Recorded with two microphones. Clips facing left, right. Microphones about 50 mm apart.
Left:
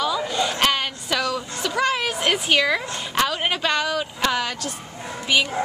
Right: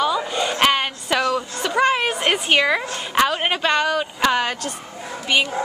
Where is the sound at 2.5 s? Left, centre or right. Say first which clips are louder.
Right 3 dB; centre.